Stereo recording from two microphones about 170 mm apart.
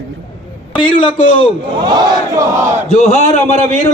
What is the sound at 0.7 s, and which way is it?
Speech, 30° left (ahead or behind).